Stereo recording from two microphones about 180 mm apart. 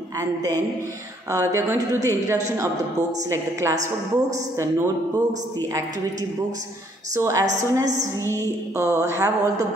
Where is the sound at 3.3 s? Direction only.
15° right (ahead or behind).